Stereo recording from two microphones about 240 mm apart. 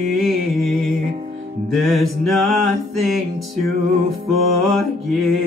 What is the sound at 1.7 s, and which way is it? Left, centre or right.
Music, centre.